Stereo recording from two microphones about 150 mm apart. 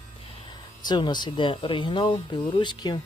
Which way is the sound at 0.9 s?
30° left (ahead or behind).